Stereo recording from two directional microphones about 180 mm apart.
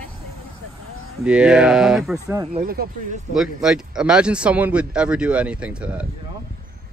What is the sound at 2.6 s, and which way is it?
Speech, 55° right (ahead or behind).